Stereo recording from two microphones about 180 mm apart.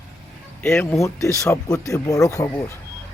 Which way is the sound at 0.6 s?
10° left (ahead or behind).